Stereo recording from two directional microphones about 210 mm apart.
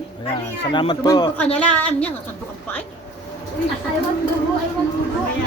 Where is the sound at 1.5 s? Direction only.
5° left (ahead or behind).